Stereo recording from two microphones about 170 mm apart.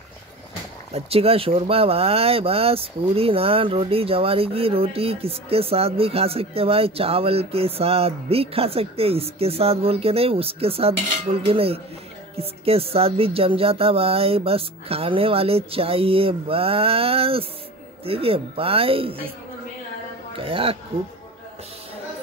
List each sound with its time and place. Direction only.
0.9 s speech: 35° right (ahead or behind)
20.3 s speech: 35° right (ahead or behind)